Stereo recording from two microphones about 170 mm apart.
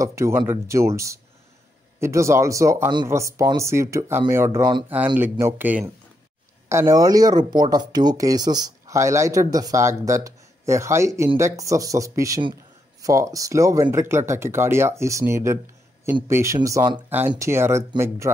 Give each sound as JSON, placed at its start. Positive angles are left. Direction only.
{"t": 0.0, "sound": "speech", "side_deg": -15}
{"t": 5.1, "sound": "speech", "side_deg": -10}